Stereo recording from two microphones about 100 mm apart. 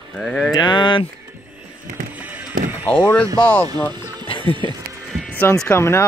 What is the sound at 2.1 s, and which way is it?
Music, 15° right (ahead or behind).